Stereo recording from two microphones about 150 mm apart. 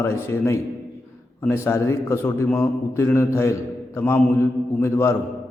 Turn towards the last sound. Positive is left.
turn(degrees=15)  # may be behind; listen again after turning